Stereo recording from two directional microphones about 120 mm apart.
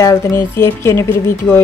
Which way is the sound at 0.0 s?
25° left (ahead or behind).